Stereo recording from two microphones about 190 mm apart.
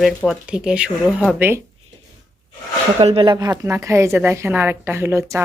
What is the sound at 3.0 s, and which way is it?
A woman's voice, 30° right (ahead or behind).